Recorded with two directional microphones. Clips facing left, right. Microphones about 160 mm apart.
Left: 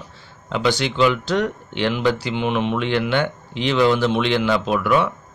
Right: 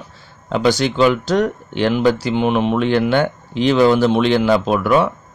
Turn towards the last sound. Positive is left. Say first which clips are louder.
# right 3 dB
turn(degrees=-40)  # may be behind; listen again after turning